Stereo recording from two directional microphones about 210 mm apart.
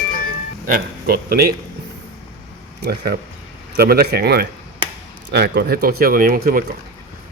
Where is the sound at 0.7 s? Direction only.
45° right (ahead or behind).